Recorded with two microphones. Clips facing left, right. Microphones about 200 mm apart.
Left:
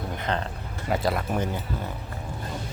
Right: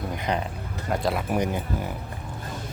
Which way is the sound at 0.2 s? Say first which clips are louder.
Right 1 dB; 15° right (ahead or behind).